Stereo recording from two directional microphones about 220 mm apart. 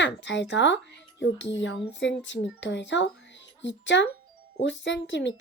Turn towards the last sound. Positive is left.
turn(degrees=55)  # may be behind; listen again after turning